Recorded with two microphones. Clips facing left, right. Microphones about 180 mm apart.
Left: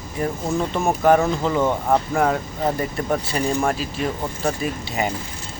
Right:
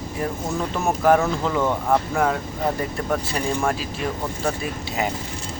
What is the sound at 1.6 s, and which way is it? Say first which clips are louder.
Speech: left 1 dB; 20° left (ahead or behind).